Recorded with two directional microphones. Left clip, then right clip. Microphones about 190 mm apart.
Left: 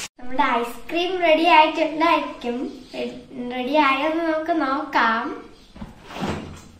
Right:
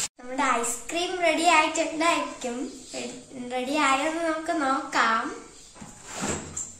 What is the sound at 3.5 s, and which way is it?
A child's voice, 20° right (ahead or behind).